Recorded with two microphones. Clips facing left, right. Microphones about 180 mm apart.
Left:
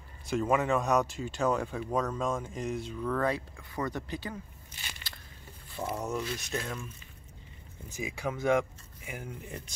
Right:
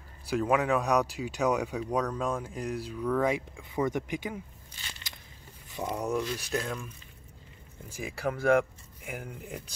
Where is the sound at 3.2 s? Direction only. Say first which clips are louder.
Right 2 dB; 15° right (ahead or behind).